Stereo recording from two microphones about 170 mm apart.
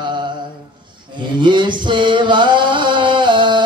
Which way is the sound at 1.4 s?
25° right (ahead or behind).